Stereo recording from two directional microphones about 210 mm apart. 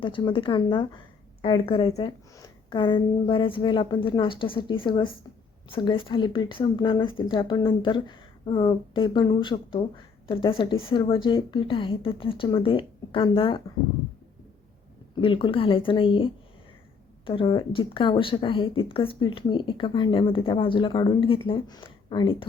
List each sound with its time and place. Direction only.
0.0 s speech: 20° left (ahead or behind)
15.1 s speech: 25° left (ahead or behind)